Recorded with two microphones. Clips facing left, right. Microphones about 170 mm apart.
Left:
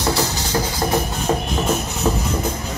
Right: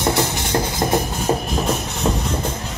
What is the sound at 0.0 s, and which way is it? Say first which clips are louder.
Music: right 1 dB; 25° right (ahead or behind).